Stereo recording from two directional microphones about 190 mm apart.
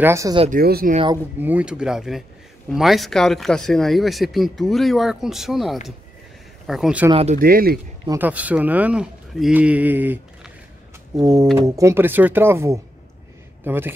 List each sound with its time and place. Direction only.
0.0 s speech: 15° right (ahead or behind)
0.5 s speech: 55° right (ahead or behind)
1.1 s speech: 10° right (ahead or behind)
7.1 s speech: 30° right (ahead or behind)
7.3 s speech: 50° right (ahead or behind)
8.1 s speech: 10° right (ahead or behind)